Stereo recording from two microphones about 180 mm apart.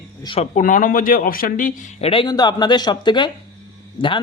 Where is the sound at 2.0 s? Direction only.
30° left (ahead or behind).